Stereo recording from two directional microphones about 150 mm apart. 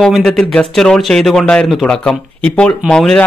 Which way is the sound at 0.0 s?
Centre (ahead or behind).